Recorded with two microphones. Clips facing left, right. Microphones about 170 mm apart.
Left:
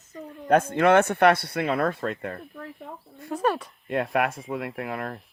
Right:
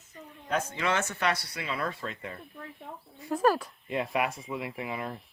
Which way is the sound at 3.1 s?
Centre (ahead or behind).